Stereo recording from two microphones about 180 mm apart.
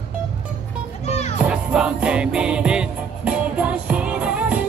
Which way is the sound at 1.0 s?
35° left (ahead or behind).